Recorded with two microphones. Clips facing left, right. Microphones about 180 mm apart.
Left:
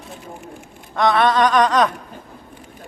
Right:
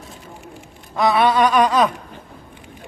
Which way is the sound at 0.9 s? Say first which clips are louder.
Even; 5° right (ahead or behind).